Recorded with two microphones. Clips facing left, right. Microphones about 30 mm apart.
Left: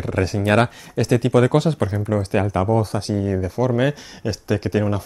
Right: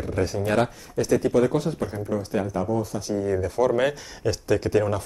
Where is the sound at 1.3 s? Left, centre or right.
Left.